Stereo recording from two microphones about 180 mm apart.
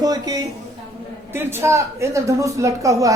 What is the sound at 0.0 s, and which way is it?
A woman's voice, 20° right (ahead or behind).